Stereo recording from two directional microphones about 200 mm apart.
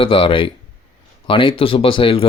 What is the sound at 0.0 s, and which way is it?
Speech, 25° left (ahead or behind).